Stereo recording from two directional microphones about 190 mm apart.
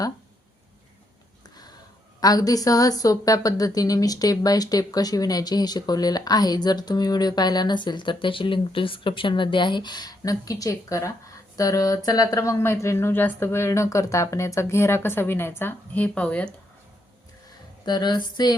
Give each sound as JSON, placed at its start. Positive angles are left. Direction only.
{"t": 2.2, "sound": "speech", "side_deg": 20}
{"t": 17.8, "sound": "speech", "side_deg": 20}